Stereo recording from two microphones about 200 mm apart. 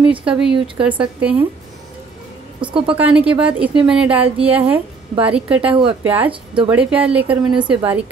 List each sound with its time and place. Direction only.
0.0 s a woman's voice: 5° right (ahead or behind)
2.6 s a woman's voice: 25° right (ahead or behind)
3.0 s a woman's voice: 5° right (ahead or behind)